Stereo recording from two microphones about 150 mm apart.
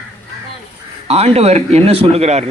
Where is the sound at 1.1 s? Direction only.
45° right (ahead or behind).